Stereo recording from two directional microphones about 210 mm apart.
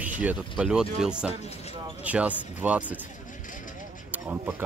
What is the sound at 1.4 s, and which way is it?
Speech, 30° left (ahead or behind).